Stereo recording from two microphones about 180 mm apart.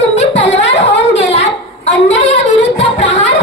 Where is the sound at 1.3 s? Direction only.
35° left (ahead or behind).